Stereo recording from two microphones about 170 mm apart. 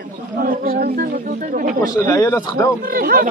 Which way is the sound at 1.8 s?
20° left (ahead or behind).